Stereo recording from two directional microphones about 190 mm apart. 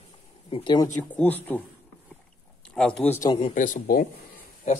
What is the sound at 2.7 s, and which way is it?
Speech, 5° left (ahead or behind).